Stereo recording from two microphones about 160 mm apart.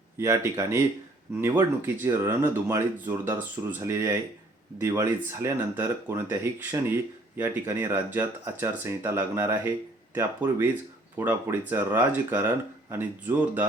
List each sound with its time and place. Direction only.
0.2 s speech: 20° right (ahead or behind)